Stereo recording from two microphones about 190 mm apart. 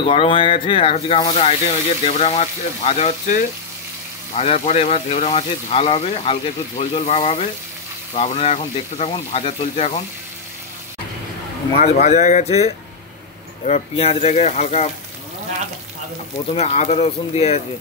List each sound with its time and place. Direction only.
0.0 s speech: 25° left (ahead or behind)
11.7 s speech: 35° left (ahead or behind)
16.5 s speech: 35° left (ahead or behind)